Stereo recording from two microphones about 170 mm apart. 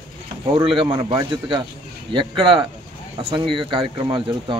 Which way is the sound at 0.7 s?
30° right (ahead or behind).